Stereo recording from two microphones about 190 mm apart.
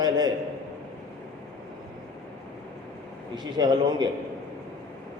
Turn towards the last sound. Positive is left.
turn(degrees=-20)  # may be behind; listen again after turning